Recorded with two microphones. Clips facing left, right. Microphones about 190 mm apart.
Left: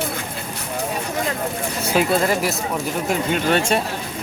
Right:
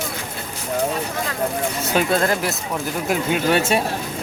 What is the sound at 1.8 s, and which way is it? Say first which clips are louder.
Speech: left 1 dB; centre (ahead or behind).